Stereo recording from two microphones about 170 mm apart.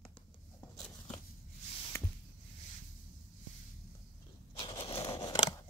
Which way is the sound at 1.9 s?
15° left (ahead or behind).